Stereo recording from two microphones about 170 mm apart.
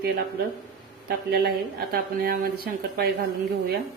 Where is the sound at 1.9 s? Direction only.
60° right (ahead or behind).